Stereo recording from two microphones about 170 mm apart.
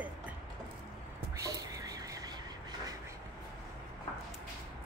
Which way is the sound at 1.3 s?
20° right (ahead or behind).